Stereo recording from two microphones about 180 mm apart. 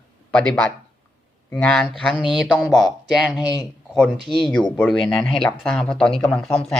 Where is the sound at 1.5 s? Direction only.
5° left (ahead or behind).